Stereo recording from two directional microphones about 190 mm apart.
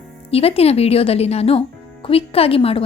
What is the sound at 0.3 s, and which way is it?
A woman's voice, 30° left (ahead or behind).